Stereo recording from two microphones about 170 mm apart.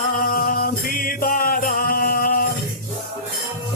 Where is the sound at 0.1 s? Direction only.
60° left (ahead or behind).